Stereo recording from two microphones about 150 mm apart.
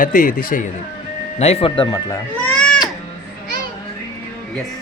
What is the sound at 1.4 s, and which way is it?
Speech, 40° left (ahead or behind).